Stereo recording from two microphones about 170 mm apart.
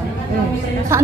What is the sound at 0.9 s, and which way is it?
Speech, 15° right (ahead or behind).